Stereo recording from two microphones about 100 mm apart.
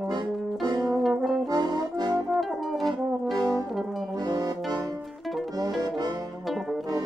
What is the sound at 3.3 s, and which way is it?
Brass instrument, 40° right (ahead or behind).